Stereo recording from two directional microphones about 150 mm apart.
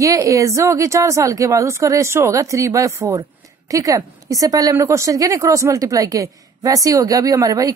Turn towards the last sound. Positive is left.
turn(degrees=-25)  # may be behind; listen again after turning